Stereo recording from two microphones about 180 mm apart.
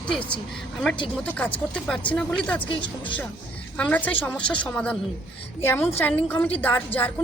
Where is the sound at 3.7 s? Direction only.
10° left (ahead or behind).